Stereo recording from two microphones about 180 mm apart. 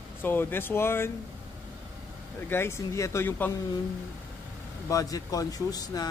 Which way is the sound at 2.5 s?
15° left (ahead or behind).